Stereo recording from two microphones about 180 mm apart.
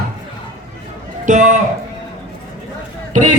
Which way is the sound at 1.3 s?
45° right (ahead or behind).